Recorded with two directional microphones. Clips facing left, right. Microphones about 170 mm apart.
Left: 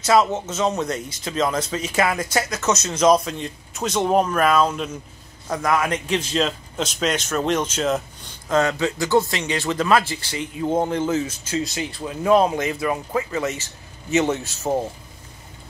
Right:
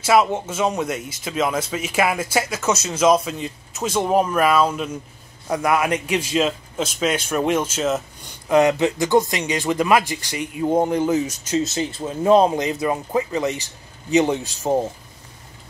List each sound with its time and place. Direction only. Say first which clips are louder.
0.0 s speech: right 1 dB; 10° right (ahead or behind)
8.5 s speech: right 4 dB; 15° right (ahead or behind)